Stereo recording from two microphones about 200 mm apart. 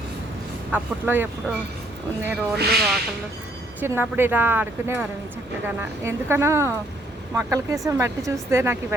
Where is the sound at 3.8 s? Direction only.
10° right (ahead or behind).